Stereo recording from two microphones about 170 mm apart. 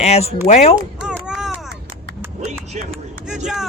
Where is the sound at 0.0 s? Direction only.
40° left (ahead or behind).